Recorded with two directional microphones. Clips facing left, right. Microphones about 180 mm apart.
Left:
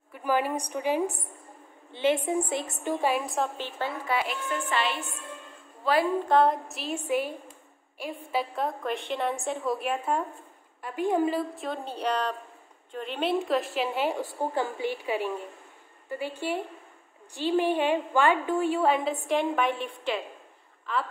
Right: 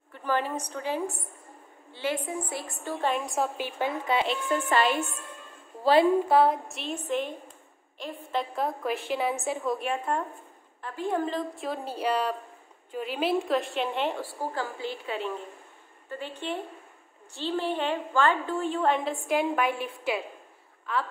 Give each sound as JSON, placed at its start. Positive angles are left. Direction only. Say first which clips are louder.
{"t": 0.1, "sound": "a woman's voice", "louder": "left 2 dB", "side_deg": 10}
{"t": 3.5, "sound": "a woman's voice", "louder": "right 3 dB", "side_deg": -10}
{"t": 4.6, "sound": "a woman's voice", "louder": "right 5 dB", "side_deg": -45}
{"t": 6.2, "sound": "a woman's voice", "louder": "even", "side_deg": -5}
{"t": 10.8, "sound": "a woman's voice", "louder": "left 4 dB", "side_deg": 15}
{"t": 14.2, "sound": "a woman's voice", "louder": "left 4 dB", "side_deg": 20}